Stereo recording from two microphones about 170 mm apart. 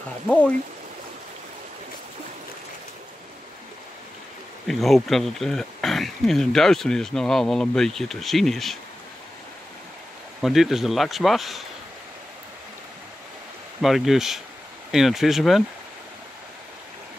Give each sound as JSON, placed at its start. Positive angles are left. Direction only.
{"t": 4.6, "sound": "speech", "side_deg": 0}
{"t": 10.4, "sound": "speech", "side_deg": 0}
{"t": 13.7, "sound": "speech", "side_deg": 0}